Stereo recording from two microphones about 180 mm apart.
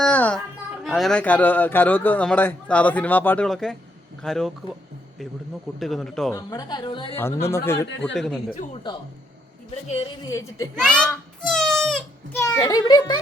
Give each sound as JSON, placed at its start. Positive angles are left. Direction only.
{"t": 0.0, "sound": "a sound", "side_deg": 5}
{"t": 0.9, "sound": "a man's voice", "side_deg": 0}
{"t": 5.8, "sound": "speech", "side_deg": 0}
{"t": 6.3, "sound": "a woman's voice", "side_deg": 20}
{"t": 7.5, "sound": "a man's voice", "side_deg": 15}
{"t": 8.1, "sound": "speech", "side_deg": 5}
{"t": 8.7, "sound": "a woman's voice", "side_deg": 25}
{"t": 10.2, "sound": "a woman's voice", "side_deg": 20}
{"t": 10.8, "sound": "a sound", "side_deg": 5}
{"t": 12.4, "sound": "a woman's voice", "side_deg": 20}